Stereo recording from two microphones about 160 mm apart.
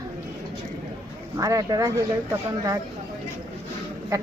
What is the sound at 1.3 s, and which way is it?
Speech, 20° right (ahead or behind).